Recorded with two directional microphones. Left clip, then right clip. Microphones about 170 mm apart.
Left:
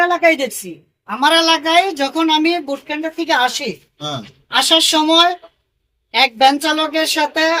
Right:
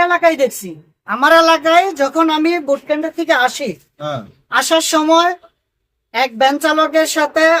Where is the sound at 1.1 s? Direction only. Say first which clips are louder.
Right 3 dB; 15° right (ahead or behind).